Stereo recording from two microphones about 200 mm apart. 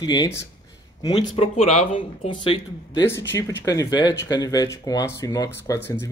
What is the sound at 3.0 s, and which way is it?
Speech, 10° left (ahead or behind).